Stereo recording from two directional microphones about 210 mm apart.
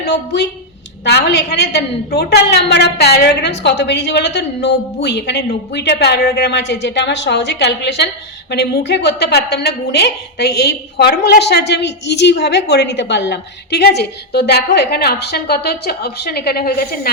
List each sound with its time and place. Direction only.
1.0 s a woman's voice: 50° left (ahead or behind)